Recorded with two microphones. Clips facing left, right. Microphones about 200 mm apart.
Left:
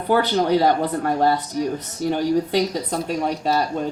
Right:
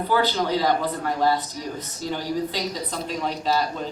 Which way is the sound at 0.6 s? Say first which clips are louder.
Left 4 dB; 60° left (ahead or behind).